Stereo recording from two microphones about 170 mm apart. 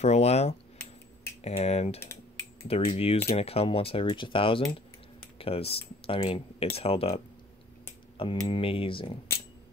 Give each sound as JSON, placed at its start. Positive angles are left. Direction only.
{"t": 0.0, "sound": "speech", "side_deg": 40}
{"t": 2.0, "sound": "computer keyboard", "side_deg": 15}
{"t": 2.6, "sound": "speech", "side_deg": 35}
{"t": 8.5, "sound": "speech", "side_deg": 30}